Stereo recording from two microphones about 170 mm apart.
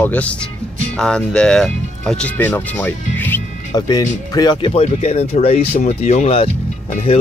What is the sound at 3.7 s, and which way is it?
Speech, 20° left (ahead or behind).